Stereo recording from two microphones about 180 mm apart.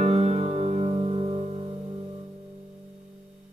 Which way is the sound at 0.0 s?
35° right (ahead or behind).